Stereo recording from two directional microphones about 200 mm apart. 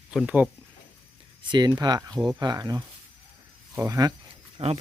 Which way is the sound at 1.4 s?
20° right (ahead or behind).